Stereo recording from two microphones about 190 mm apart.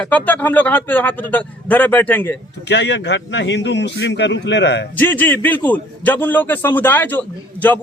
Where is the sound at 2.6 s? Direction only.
65° left (ahead or behind).